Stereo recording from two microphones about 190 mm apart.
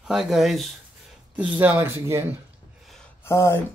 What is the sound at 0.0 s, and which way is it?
Speech, centre (ahead or behind).